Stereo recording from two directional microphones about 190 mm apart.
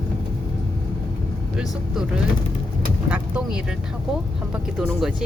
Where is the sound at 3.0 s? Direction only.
5° right (ahead or behind).